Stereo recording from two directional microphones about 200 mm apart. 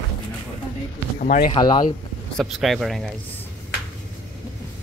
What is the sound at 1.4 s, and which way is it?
Speech, 25° left (ahead or behind).